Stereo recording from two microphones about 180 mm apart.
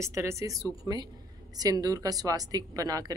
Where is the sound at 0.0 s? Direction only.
15° right (ahead or behind).